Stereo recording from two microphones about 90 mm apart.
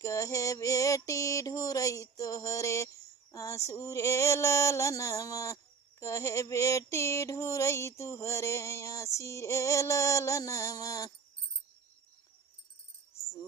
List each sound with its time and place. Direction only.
0.0 s music: 35° left (ahead or behind)